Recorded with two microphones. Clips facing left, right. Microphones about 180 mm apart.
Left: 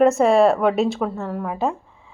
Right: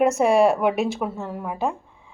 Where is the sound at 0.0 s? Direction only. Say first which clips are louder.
Left 3 dB; centre (ahead or behind).